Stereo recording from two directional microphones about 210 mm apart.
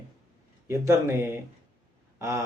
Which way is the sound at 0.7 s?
10° right (ahead or behind).